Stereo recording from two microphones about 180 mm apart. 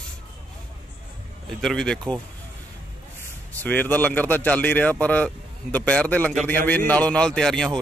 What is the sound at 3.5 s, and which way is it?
Speech, 10° left (ahead or behind).